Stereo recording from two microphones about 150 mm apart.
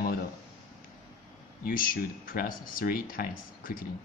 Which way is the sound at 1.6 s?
70° left (ahead or behind).